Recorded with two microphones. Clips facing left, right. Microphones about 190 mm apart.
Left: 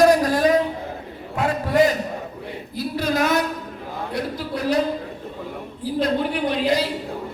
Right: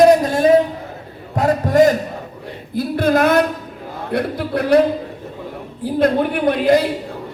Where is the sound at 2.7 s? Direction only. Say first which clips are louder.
Right 7 dB; 55° right (ahead or behind).